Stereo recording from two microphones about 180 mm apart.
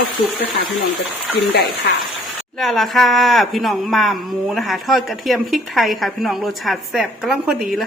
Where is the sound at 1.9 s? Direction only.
60° left (ahead or behind).